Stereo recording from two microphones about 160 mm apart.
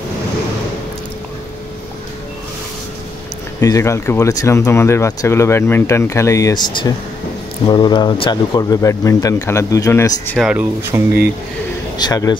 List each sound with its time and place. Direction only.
3.6 s speech: 20° left (ahead or behind)
10.3 s speech: 5° right (ahead or behind)
12.0 s speech: 25° left (ahead or behind)